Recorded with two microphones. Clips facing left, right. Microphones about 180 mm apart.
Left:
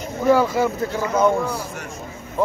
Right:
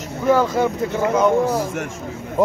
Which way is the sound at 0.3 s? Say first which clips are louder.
Even; 10° left (ahead or behind).